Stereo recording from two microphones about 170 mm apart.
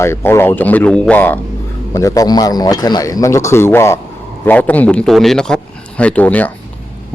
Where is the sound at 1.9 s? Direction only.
20° left (ahead or behind).